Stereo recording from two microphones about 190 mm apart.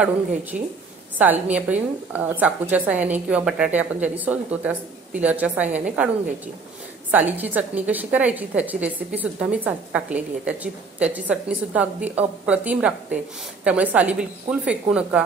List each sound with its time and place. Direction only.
0.5 s a woman's voice: 50° right (ahead or behind)
1.1 s a woman's voice: 10° right (ahead or behind)